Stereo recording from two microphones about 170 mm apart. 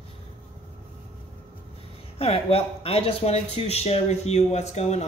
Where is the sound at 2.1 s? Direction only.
35° left (ahead or behind).